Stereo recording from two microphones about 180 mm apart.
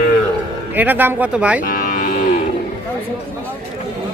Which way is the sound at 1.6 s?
50° left (ahead or behind).